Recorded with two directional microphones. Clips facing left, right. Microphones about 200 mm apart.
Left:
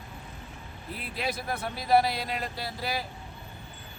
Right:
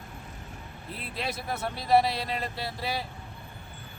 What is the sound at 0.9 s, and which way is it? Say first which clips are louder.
Speech: left 1 dB; centre (ahead or behind).